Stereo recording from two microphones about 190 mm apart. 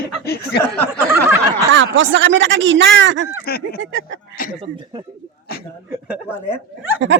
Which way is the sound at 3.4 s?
55° left (ahead or behind).